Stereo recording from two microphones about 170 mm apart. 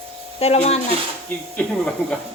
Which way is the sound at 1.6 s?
5° left (ahead or behind).